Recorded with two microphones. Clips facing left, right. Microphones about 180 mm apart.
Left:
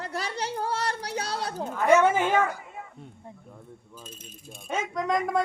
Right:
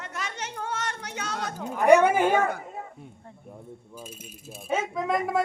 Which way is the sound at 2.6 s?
40° right (ahead or behind).